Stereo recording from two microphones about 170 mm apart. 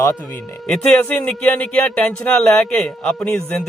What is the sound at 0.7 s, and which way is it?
Speech, 10° left (ahead or behind).